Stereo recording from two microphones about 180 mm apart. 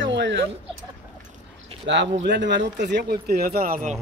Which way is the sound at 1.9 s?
80° right.